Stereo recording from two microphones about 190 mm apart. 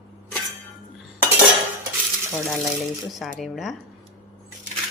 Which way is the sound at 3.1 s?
Centre (ahead or behind).